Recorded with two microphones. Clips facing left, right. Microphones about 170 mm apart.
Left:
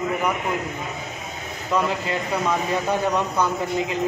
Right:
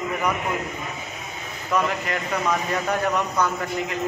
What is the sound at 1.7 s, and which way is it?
A man's voice, 25° left (ahead or behind).